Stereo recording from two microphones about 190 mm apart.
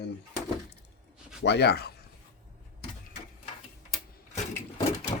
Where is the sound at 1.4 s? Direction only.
60° left (ahead or behind).